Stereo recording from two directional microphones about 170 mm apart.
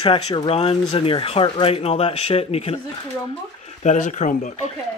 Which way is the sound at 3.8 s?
45° left (ahead or behind).